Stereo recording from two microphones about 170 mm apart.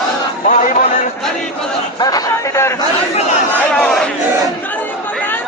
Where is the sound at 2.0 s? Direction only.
20° left (ahead or behind).